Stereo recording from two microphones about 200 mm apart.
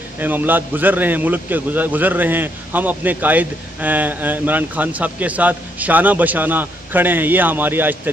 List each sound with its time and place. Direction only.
0.2 s a man's voice: 10° right (ahead or behind)